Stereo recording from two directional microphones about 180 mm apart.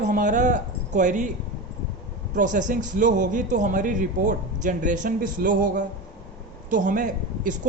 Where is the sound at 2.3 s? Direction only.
45° right (ahead or behind).